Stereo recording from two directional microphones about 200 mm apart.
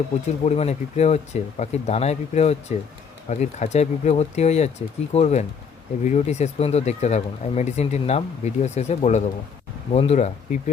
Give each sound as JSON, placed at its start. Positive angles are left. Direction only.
{"t": 0.4, "sound": "speech", "side_deg": 35}